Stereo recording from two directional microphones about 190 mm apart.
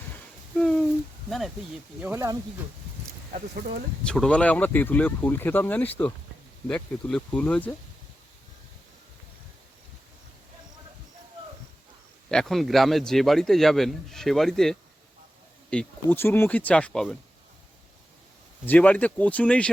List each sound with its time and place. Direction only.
0.5 s a sound: 5° left (ahead or behind)
2.0 s speech: 5° right (ahead or behind)
3.5 s speech: 60° right (ahead or behind)
4.0 s speech: 5° left (ahead or behind)
12.3 s a man's voice: centre (ahead or behind)
18.6 s speech: 10° left (ahead or behind)